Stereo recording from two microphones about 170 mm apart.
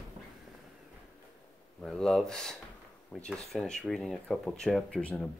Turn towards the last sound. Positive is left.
turn(degrees=5)  # may be behind; listen again after turning